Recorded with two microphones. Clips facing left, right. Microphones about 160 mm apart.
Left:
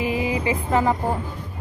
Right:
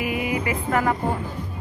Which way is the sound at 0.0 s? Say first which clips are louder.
Left 2 dB; 30° left (ahead or behind).